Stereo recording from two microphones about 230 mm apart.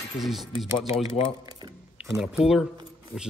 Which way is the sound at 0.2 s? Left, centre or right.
Centre.